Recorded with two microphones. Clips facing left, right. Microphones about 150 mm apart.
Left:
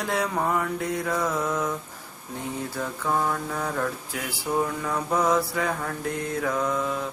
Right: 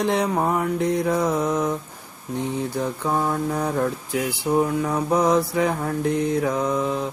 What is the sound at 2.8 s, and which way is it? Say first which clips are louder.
Speech: right 2 dB; 20° right (ahead or behind).